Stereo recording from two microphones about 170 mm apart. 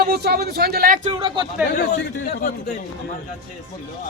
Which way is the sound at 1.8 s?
70° left (ahead or behind).